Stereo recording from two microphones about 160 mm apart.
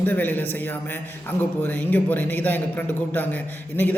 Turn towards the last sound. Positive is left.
turn(degrees=10)  # may be behind; listen again after turning